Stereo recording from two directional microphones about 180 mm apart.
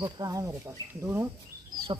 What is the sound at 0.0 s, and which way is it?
Speech, 20° right (ahead or behind).